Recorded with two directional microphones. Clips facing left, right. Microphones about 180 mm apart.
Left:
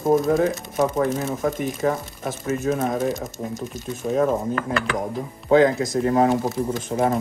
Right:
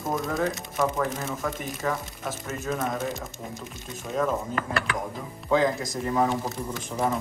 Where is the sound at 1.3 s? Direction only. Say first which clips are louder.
Left 7 dB; 50° left (ahead or behind).